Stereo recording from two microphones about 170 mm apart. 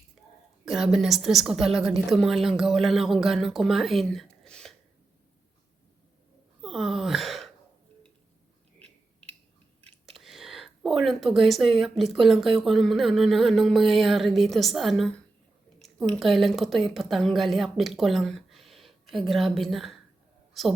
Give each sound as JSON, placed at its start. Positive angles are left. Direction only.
{"t": 0.6, "sound": "a woman's voice", "side_deg": 0}
{"t": 6.6, "sound": "a sound", "side_deg": 0}
{"t": 10.2, "sound": "a woman's voice", "side_deg": 0}